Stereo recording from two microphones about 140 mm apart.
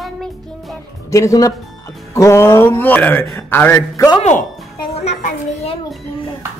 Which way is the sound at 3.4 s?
15° left (ahead or behind).